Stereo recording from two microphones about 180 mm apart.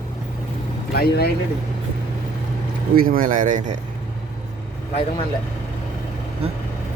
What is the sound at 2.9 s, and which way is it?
Speech, 55° right (ahead or behind).